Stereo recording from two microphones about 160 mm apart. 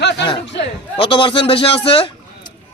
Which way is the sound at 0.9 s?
30° left (ahead or behind).